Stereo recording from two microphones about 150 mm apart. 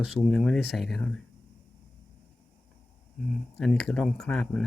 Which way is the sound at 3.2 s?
Centre (ahead or behind).